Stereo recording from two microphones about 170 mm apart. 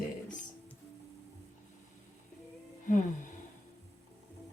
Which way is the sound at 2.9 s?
45° left (ahead or behind).